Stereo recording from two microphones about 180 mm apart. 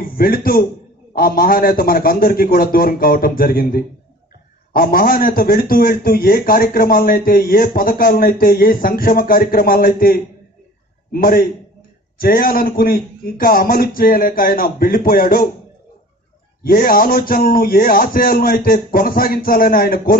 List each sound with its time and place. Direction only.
0.0 s a man's voice: 55° left (ahead or behind)
16.6 s a man's voice: 55° left (ahead or behind)